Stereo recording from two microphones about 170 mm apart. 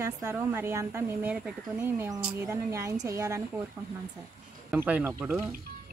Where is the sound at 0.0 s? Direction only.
15° right (ahead or behind).